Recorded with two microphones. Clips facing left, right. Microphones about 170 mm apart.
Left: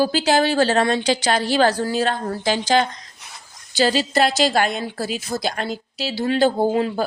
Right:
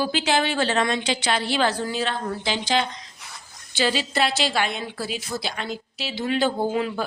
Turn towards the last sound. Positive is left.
turn(degrees=35)  # may be behind; listen again after turning